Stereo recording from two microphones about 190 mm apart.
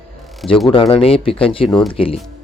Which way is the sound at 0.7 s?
30° left (ahead or behind).